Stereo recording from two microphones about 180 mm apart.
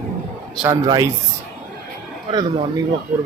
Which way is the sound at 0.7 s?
20° right (ahead or behind).